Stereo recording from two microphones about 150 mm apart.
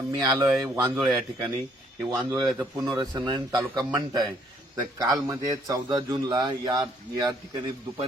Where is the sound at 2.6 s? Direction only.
20° right (ahead or behind).